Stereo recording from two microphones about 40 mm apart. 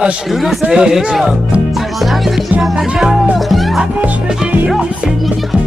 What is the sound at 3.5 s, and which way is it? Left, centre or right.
Music, centre.